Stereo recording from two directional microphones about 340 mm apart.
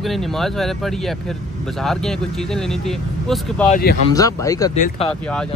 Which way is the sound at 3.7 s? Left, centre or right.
Left.